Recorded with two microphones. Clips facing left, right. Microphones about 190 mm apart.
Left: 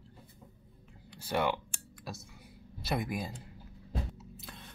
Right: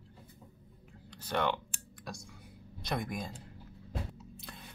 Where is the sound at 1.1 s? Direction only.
10° left (ahead or behind).